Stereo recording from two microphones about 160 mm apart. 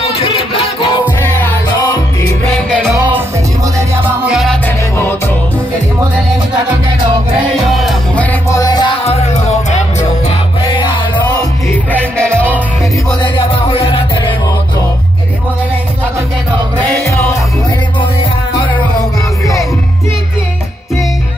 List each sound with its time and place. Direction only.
0.2 s music: 35° left (ahead or behind)
1.2 s music: 10° left (ahead or behind)
3.7 s music: 15° right (ahead or behind)
4.3 s music: centre (ahead or behind)
4.6 s music: 15° left (ahead or behind)
7.7 s music: centre (ahead or behind)
8.3 s music: 20° left (ahead or behind)
9.0 s music: 40° left (ahead or behind)
10.2 s music: 30° left (ahead or behind)
11.9 s music: 10° left (ahead or behind)
13.2 s music: 35° left (ahead or behind)
17.0 s music: 15° left (ahead or behind)